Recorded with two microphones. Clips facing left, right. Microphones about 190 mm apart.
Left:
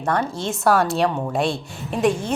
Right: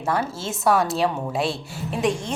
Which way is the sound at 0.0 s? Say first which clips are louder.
Left 2 dB; 5° right (ahead or behind).